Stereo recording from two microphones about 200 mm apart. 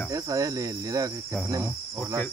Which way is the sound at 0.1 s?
15° right (ahead or behind).